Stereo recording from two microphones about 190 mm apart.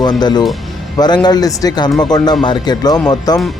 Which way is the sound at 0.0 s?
20° left (ahead or behind).